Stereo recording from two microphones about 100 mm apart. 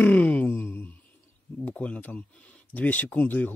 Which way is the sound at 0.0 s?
15° left (ahead or behind).